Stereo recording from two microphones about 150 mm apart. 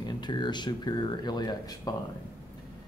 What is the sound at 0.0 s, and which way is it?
Speech, 30° left (ahead or behind).